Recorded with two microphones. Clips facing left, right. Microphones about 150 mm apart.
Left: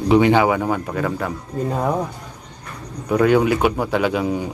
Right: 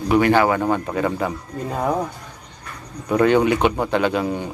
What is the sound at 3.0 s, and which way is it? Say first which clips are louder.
A man's voice: even; 5° left (ahead or behind).